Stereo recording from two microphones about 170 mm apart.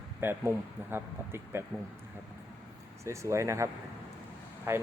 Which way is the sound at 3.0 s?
15° right (ahead or behind).